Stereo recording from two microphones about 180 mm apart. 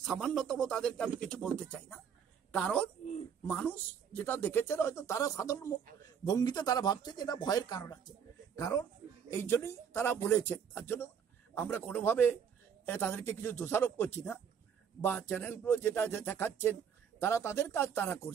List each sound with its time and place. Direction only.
0.0 s a man's voice: centre (ahead or behind)